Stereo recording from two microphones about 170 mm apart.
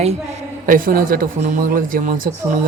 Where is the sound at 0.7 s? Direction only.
55° right (ahead or behind).